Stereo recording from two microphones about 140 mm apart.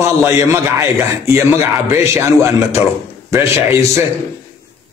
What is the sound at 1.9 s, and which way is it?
A man's voice, 20° right (ahead or behind).